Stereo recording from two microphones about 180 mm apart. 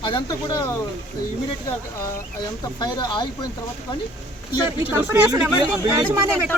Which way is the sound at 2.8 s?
25° left (ahead or behind).